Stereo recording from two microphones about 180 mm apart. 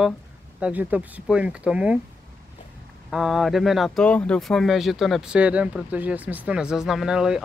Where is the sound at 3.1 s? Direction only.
Centre (ahead or behind).